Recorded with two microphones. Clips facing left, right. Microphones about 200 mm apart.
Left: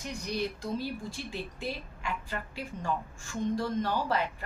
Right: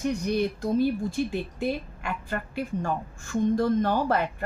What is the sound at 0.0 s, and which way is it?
Speech, 55° right (ahead or behind).